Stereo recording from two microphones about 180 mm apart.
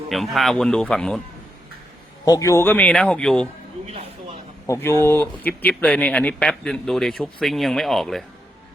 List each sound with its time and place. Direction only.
0.1 s speech: centre (ahead or behind)
2.2 s speech: 20° left (ahead or behind)
3.8 s a sound: 35° right (ahead or behind)
4.6 s speech: 15° left (ahead or behind)